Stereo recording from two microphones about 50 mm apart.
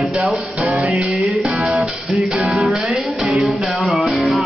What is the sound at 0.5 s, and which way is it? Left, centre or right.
Music, right.